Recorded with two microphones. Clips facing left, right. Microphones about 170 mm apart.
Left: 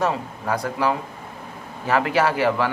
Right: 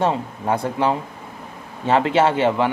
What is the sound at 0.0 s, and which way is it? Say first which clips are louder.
Speech: right 3 dB; 25° right (ahead or behind).